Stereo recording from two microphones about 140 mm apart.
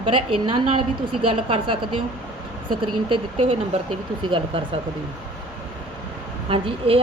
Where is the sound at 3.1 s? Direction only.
40° right (ahead or behind).